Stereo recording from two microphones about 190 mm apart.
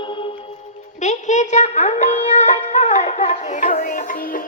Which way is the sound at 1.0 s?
40° left (ahead or behind).